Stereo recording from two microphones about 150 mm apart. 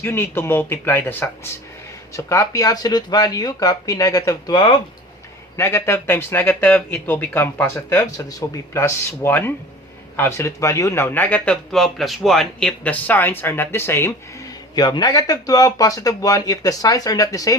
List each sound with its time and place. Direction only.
0.0 s speech: 15° left (ahead or behind)
5.5 s speech: 20° left (ahead or behind)
14.8 s speech: 30° left (ahead or behind)